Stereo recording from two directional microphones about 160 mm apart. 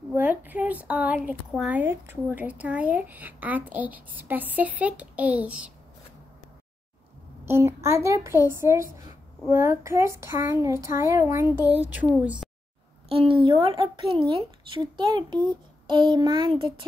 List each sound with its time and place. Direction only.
0.1 s a woman's voice: 10° right (ahead or behind)
7.4 s speech: 15° right (ahead or behind)
13.1 s a woman's voice: 35° right (ahead or behind)